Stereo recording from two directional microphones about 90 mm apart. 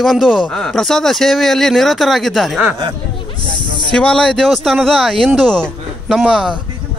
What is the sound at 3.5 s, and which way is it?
Snake, 60° left (ahead or behind).